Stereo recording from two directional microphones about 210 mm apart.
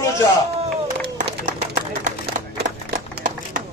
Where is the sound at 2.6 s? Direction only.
45° right (ahead or behind).